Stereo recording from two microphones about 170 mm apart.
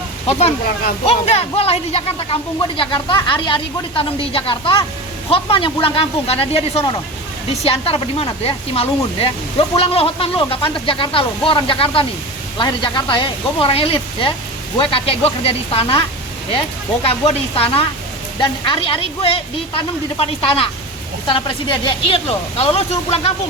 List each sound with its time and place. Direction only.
0.3 s speech: 40° left (ahead or behind)